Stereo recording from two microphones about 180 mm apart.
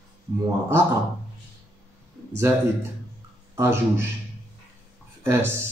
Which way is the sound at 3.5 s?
15° right (ahead or behind).